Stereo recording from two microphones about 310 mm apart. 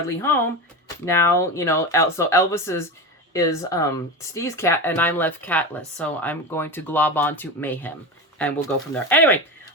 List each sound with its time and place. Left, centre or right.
0.1 s speech: centre